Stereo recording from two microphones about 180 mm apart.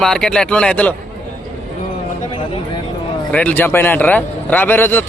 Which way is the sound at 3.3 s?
10° left (ahead or behind).